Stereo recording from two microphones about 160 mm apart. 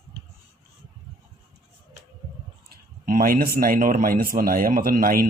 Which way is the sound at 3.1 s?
60° right (ahead or behind).